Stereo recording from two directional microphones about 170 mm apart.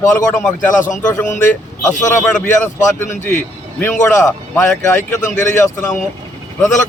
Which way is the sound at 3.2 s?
10° left (ahead or behind).